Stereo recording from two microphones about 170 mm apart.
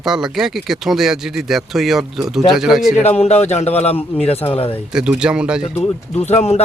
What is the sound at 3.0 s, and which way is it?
Speech, 40° left (ahead or behind).